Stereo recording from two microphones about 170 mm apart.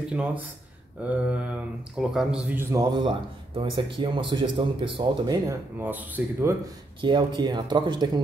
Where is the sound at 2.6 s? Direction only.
20° right (ahead or behind).